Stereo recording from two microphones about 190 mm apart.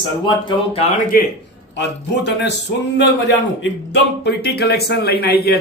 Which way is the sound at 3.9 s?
60° left (ahead or behind).